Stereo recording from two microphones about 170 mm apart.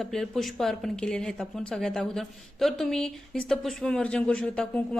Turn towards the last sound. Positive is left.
turn(degrees=5)  # may be behind; listen again after turning